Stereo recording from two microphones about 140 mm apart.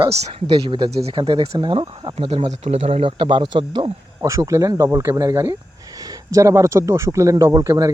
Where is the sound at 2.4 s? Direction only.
55° right (ahead or behind); by 3.9 s 35° right (ahead or behind).